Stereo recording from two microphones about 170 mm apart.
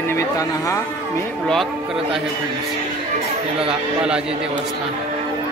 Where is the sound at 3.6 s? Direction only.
5° right (ahead or behind).